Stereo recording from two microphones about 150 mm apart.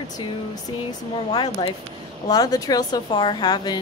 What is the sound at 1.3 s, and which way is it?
A woman's voice, 30° left (ahead or behind).